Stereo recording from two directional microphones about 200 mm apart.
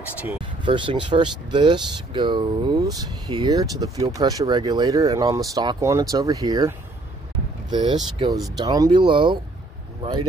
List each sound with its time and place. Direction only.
0.7 s speech: 25° right (ahead or behind)
7.7 s speech: 20° right (ahead or behind)